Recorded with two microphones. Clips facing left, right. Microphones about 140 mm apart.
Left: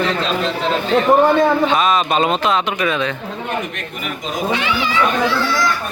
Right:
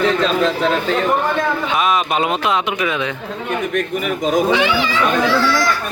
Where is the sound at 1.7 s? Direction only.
10° right (ahead or behind).